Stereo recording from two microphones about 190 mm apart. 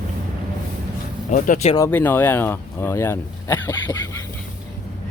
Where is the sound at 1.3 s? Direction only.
45° left (ahead or behind).